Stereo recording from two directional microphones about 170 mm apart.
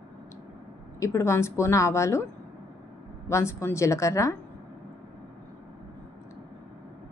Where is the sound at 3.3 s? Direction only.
15° left (ahead or behind).